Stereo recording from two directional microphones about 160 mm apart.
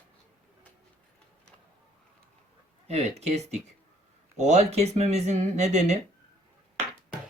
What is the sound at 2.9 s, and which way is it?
Speech, 40° right (ahead or behind).